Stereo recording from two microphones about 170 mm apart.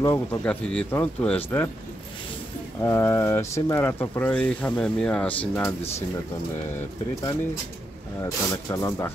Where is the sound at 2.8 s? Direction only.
15° left (ahead or behind).